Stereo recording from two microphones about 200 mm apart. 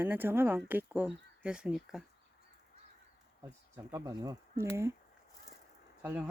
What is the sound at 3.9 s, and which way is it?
Speech, 20° right (ahead or behind).